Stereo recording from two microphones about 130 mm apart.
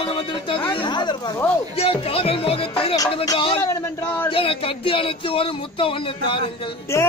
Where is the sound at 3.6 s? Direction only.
20° left (ahead or behind).